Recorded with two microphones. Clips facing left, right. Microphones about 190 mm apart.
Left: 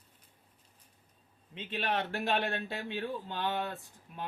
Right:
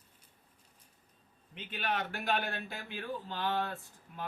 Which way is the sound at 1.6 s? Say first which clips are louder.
Left 2 dB; 30° left (ahead or behind).